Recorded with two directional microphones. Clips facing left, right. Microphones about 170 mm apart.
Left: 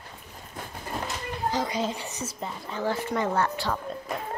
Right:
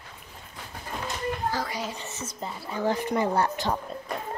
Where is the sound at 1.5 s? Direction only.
20° left (ahead or behind).